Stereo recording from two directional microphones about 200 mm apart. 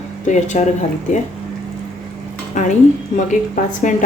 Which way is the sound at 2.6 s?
40° left (ahead or behind).